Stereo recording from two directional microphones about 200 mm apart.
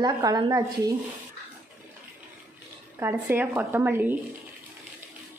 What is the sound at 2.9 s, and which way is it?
Speech, 10° right (ahead or behind).